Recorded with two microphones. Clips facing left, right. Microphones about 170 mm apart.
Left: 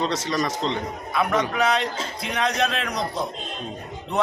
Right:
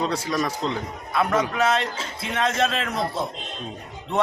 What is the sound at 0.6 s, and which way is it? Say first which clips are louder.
A man's voice: left 1 dB; 5° right (ahead or behind).